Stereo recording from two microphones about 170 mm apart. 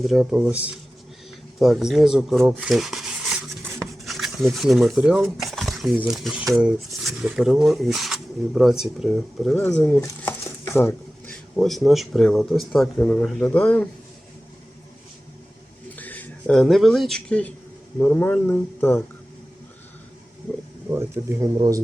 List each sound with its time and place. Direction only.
0.1 s speech: 5° right (ahead or behind)
2.4 s a sound: 5° right (ahead or behind)
4.5 s speech: centre (ahead or behind)
10.0 s a sound: 15° left (ahead or behind)
11.5 s speech: centre (ahead or behind)
15.9 s speech: 10° left (ahead or behind)
20.9 s speech: 15° right (ahead or behind)